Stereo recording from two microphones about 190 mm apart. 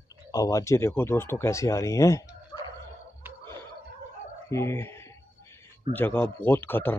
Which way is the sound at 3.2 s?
10° right (ahead or behind).